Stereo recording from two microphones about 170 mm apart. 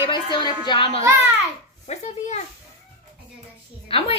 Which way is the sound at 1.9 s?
40° left (ahead or behind).